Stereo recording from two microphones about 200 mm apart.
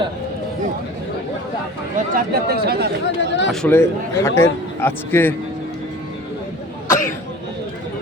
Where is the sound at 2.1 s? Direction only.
50° right (ahead or behind).